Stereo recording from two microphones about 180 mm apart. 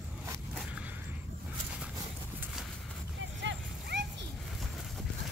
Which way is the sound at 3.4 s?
80° right.